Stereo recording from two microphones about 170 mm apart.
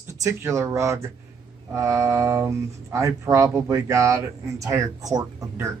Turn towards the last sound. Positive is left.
turn(degrees=-20)  # may be behind; listen again after turning